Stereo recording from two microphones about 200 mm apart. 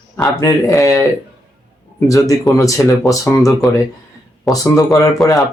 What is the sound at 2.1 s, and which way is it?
Speech, 15° left (ahead or behind).